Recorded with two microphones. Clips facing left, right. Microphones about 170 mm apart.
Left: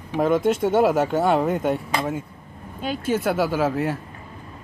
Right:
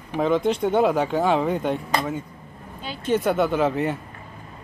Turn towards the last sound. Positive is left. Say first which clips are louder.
# even
turn(degrees=0)  # may be behind; listen again after turning